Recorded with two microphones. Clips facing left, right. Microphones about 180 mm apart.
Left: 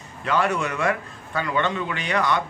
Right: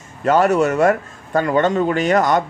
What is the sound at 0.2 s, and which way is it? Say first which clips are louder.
A man's voice: right 9 dB; 45° right (ahead or behind).